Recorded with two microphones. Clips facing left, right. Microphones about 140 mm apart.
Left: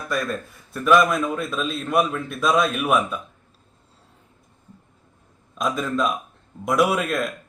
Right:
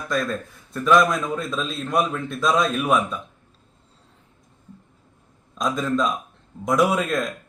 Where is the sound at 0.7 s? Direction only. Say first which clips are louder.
Even; 5° left (ahead or behind).